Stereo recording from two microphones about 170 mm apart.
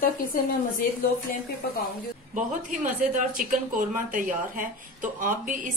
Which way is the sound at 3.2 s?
55° right (ahead or behind).